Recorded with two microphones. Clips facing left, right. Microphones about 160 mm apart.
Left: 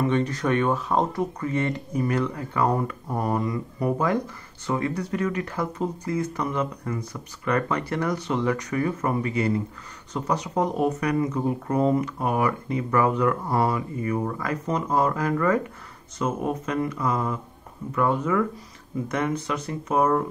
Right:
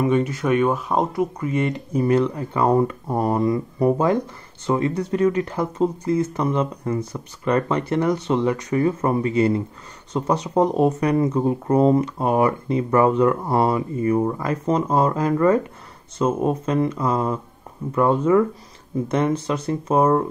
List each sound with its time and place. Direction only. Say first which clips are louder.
0.0 s speech: right 3 dB; 10° right (ahead or behind); by 20.2 s 30° right (ahead or behind)